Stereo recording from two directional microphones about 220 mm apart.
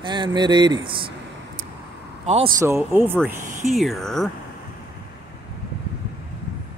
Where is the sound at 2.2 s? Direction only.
30° right (ahead or behind).